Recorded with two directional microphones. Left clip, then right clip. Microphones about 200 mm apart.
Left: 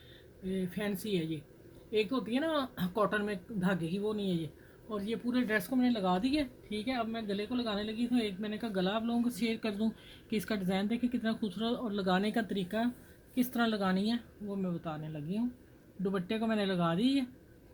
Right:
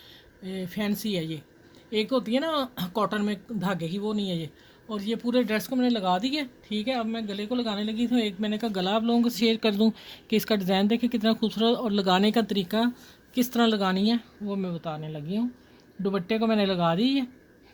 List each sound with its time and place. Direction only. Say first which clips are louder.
0.4 s speech: right 5 dB; 60° right (ahead or behind)